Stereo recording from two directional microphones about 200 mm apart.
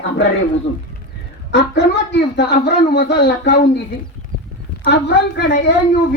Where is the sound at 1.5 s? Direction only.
60° left (ahead or behind).